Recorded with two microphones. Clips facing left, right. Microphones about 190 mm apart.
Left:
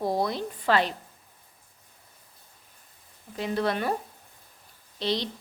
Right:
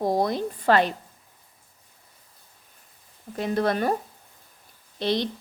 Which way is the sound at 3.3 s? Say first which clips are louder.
Right 3 dB; 45° right (ahead or behind).